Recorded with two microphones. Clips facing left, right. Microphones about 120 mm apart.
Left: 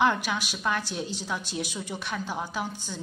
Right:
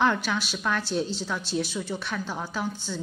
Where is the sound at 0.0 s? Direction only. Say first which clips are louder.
Even; 10° left (ahead or behind).